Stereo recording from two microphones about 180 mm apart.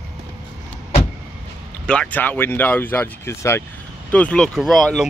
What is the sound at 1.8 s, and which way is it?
Speech, 5° left (ahead or behind).